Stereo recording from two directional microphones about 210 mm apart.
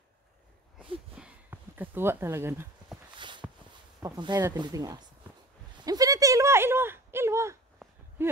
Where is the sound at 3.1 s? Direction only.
20° right (ahead or behind).